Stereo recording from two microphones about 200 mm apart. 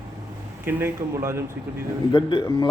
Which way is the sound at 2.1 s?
25° left (ahead or behind).